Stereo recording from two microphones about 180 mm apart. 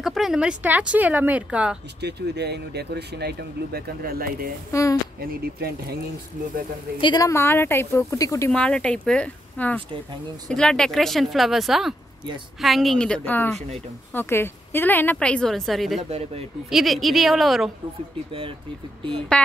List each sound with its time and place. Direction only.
0.0 s speech: centre (ahead or behind)
2.0 s speech: 65° right (ahead or behind)
4.7 s a woman's voice: 15° left (ahead or behind)
5.3 s speech: 60° right (ahead or behind)
7.0 s a woman's voice: 25° left (ahead or behind)
8.5 s a woman's voice: 5° left (ahead or behind)
16.0 s speech: 35° right (ahead or behind)
16.7 s speech: centre (ahead or behind)
19.3 s speech: 5° left (ahead or behind)